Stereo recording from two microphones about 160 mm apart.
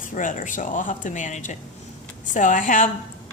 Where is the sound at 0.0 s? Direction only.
55° left (ahead or behind).